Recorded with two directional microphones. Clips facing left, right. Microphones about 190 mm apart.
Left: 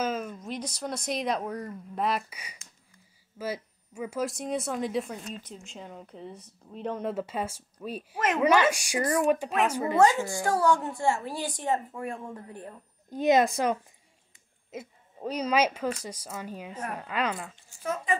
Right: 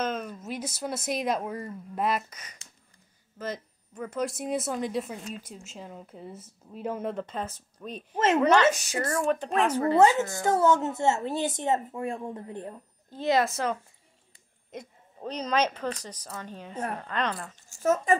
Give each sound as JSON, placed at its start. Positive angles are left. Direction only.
{"t": 0.0, "sound": "speech", "side_deg": 5}
{"t": 2.3, "sound": "speech", "side_deg": 10}
{"t": 10.4, "sound": "speech", "side_deg": -20}
{"t": 13.1, "sound": "speech", "side_deg": 15}
{"t": 17.6, "sound": "speech", "side_deg": -45}